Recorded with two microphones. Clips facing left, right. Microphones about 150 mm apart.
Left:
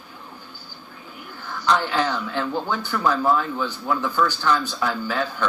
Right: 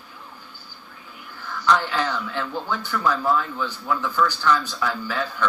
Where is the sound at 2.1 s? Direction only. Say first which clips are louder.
Left 3 dB; 25° left (ahead or behind).